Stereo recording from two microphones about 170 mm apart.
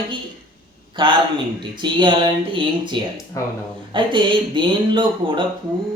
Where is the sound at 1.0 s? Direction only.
30° right (ahead or behind).